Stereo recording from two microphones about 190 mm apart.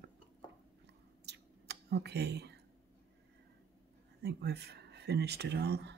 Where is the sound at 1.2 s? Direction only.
60° right (ahead or behind).